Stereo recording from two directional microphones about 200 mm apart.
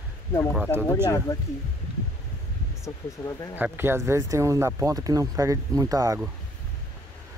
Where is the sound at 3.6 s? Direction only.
10° right (ahead or behind).